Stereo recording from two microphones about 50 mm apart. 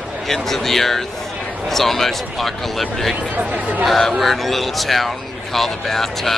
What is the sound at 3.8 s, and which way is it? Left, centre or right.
Speech, centre.